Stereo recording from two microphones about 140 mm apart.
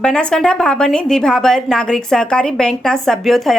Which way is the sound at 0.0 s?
5° left (ahead or behind).